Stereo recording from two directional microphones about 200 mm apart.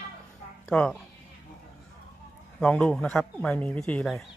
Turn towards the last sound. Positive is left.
turn(degrees=5)  # may be behind; listen again after turning